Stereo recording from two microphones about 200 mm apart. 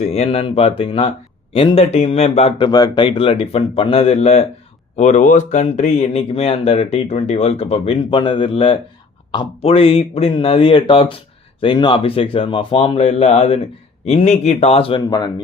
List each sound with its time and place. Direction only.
0.0 s speech: 30° left (ahead or behind)